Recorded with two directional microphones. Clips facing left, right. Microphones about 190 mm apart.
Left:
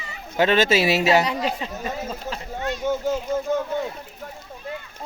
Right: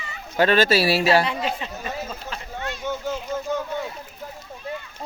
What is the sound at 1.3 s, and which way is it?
Speech, centre (ahead or behind).